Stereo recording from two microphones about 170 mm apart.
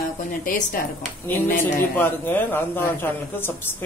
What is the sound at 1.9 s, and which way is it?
Speech, 10° left (ahead or behind).